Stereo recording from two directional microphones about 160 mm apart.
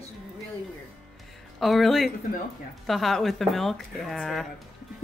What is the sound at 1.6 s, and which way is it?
Speech, centre (ahead or behind).